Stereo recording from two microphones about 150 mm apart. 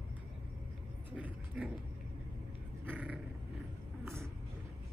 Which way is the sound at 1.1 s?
10° right (ahead or behind).